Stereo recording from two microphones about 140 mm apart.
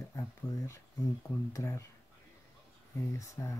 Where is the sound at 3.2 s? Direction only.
20° left (ahead or behind).